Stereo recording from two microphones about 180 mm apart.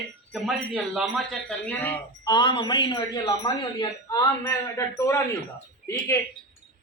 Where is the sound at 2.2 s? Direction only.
25° left (ahead or behind).